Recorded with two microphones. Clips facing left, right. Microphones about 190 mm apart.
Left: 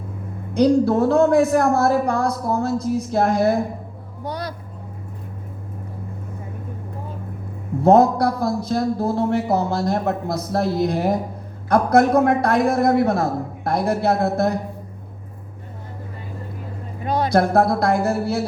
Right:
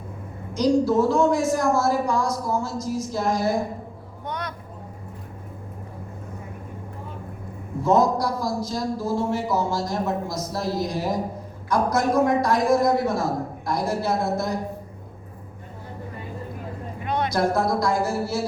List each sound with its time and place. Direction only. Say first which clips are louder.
0.5 s a man's voice: left 3 dB; 60° left (ahead or behind)
4.2 s vehicle: left 4 dB; 35° left (ahead or behind)
7.8 s a man's voice: left 5 dB; 60° left (ahead or behind)
17.0 s a sound: left 4 dB; 35° left (ahead or behind)
17.3 s a man's voice: left 6 dB; 60° left (ahead or behind)